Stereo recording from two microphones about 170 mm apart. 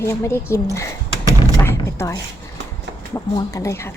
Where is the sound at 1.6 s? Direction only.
15° left (ahead or behind).